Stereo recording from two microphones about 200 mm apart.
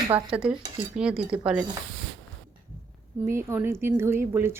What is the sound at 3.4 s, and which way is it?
Speech, 15° right (ahead or behind).